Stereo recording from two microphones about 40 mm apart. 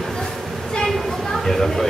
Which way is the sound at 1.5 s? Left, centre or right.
Centre.